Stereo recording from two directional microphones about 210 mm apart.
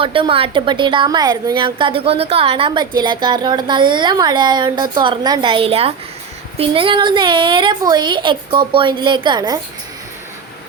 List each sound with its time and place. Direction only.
0.0 s a woman's voice: 25° right (ahead or behind)